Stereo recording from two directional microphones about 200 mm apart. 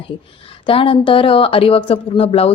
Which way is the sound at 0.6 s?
25° left (ahead or behind).